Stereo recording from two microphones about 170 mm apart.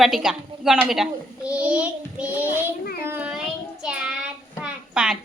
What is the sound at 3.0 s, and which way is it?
Child singing, 10° right (ahead or behind).